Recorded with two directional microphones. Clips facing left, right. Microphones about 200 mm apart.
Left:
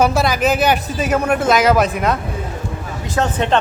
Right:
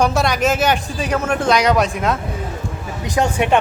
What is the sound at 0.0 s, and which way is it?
Speech, centre (ahead or behind).